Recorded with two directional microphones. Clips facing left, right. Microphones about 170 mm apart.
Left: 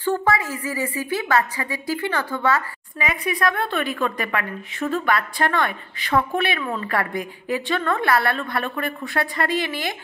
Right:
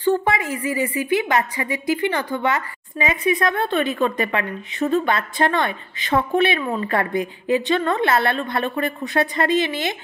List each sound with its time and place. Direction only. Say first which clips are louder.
0.0 s speech: right 2 dB; 20° right (ahead or behind)